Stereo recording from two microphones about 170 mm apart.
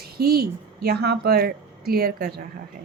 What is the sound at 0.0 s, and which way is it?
Speech, 65° right (ahead or behind).